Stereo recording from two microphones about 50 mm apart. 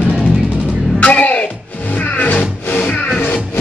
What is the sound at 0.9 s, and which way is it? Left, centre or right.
Music, left.